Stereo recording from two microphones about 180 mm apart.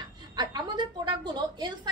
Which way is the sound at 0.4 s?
25° right (ahead or behind).